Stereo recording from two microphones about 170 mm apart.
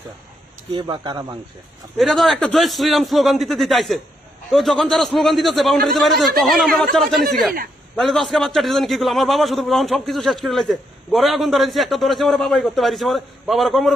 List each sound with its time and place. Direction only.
0.7 s speech: 30° right (ahead or behind)
2.0 s a man's voice: centre (ahead or behind)